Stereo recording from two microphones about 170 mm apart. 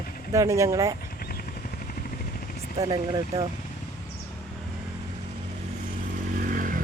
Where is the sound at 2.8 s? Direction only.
20° right (ahead or behind).